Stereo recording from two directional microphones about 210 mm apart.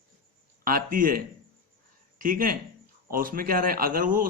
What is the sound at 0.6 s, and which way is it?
Speech, 40° right (ahead or behind).